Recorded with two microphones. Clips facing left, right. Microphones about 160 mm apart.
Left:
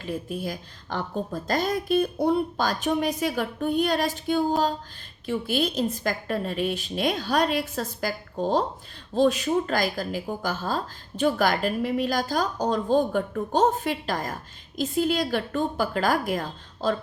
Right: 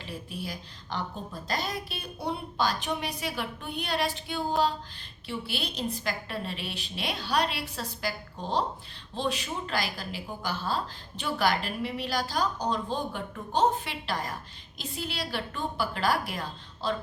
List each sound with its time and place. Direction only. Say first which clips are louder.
0.0 s speech: left 7 dB; 45° left (ahead or behind)